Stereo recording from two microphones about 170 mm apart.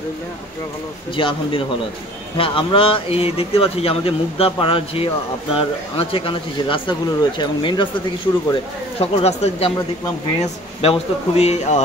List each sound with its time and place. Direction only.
1.1 s a man's voice: 30° left (ahead or behind)
9.0 s speech: 35° left (ahead or behind)